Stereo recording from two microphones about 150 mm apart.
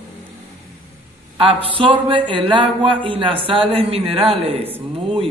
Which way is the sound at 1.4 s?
35° right (ahead or behind).